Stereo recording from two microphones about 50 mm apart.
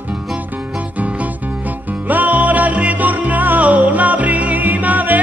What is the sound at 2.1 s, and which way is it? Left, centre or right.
Music, right.